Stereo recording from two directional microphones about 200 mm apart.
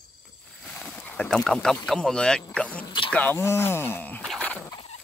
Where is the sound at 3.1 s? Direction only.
10° left (ahead or behind).